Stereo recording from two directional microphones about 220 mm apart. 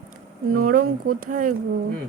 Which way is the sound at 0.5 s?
40° right (ahead or behind).